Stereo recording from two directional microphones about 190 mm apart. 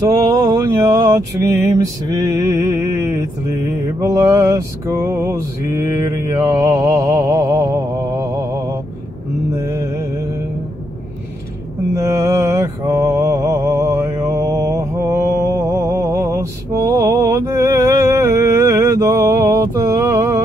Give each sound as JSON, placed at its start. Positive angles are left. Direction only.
{"t": 0.1, "sound": "mantra", "side_deg": -20}
{"t": 11.9, "sound": "mantra", "side_deg": -15}